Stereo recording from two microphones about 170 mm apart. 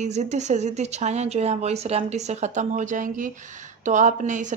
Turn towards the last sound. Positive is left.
turn(degrees=-45)  # may be behind; listen again after turning